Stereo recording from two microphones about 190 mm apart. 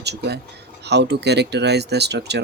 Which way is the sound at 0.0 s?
60° right (ahead or behind).